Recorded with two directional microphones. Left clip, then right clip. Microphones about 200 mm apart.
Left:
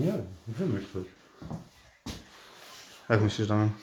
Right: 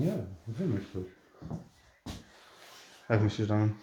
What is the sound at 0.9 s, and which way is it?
Speech, centre (ahead or behind).